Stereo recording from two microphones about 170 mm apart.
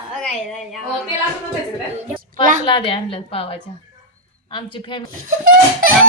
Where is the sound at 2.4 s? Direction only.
50° right (ahead or behind).